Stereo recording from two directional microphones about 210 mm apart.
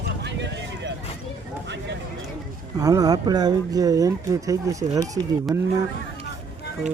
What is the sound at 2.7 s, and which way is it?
Speech, 15° right (ahead or behind).